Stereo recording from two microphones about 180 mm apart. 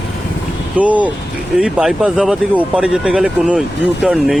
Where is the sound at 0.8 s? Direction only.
10° right (ahead or behind).